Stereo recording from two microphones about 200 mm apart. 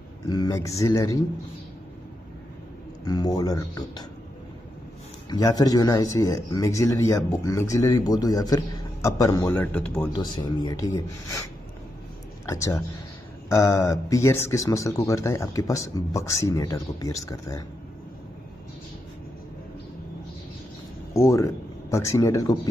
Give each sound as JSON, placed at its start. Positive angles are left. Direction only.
{"t": 0.3, "sound": "speech", "side_deg": 20}
{"t": 3.1, "sound": "speech", "side_deg": 20}
{"t": 5.3, "sound": "speech", "side_deg": 20}
{"t": 10.1, "sound": "speech", "side_deg": 20}
{"t": 12.4, "sound": "speech", "side_deg": 15}
{"t": 21.1, "sound": "speech", "side_deg": 15}